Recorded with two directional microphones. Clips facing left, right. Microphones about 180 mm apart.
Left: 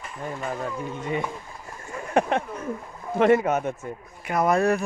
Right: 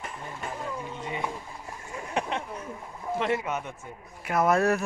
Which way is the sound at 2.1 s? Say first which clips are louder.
Left 8 dB; 50° left (ahead or behind).